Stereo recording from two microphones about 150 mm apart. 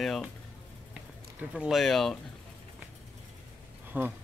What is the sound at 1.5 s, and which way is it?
Speech, centre (ahead or behind).